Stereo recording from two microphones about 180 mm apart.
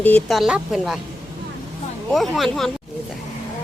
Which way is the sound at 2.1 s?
Centre (ahead or behind).